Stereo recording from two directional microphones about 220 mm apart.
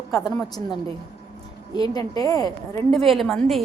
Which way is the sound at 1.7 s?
20° left (ahead or behind).